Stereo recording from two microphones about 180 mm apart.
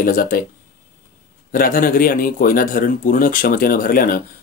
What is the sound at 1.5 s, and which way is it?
Speech, 50° left (ahead or behind).